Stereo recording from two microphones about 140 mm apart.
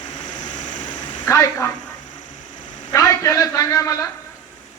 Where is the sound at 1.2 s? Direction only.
20° left (ahead or behind).